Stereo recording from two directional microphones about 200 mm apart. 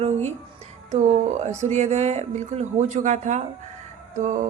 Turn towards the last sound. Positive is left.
turn(degrees=-40)  # may be behind; listen again after turning